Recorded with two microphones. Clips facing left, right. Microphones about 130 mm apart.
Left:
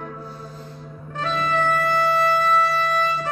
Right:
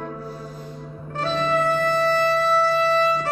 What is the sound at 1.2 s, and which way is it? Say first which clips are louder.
Music: right 1 dB; 35° right (ahead or behind).